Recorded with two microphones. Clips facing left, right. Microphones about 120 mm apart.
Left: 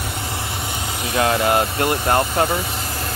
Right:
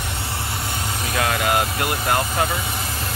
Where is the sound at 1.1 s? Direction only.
30° left (ahead or behind).